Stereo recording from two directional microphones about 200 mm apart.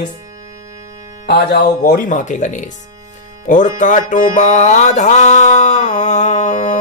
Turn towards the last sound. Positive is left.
turn(degrees=40)  # may be behind; listen again after turning